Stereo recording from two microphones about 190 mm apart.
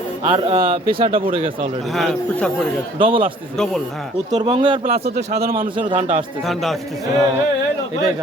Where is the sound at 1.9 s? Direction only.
Centre (ahead or behind).